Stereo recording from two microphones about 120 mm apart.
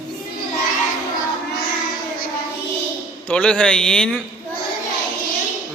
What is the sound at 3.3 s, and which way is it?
Speech, 10° left (ahead or behind).